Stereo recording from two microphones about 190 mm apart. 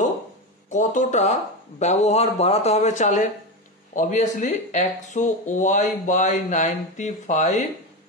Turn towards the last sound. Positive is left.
turn(degrees=40)  # may be behind; listen again after turning